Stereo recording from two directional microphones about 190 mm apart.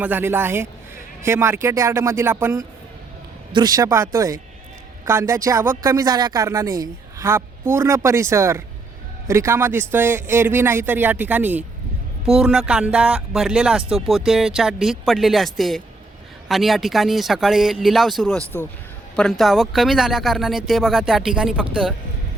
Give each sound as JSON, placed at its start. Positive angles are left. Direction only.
{"t": 0.0, "sound": "speech", "side_deg": -10}